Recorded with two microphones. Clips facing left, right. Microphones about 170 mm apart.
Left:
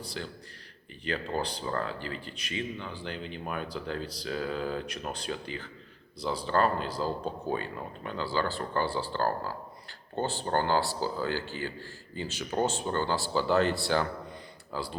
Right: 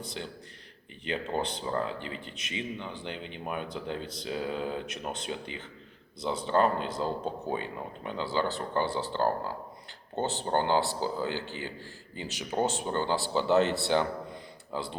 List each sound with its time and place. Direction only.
0.0 s speech: 20° right (ahead or behind)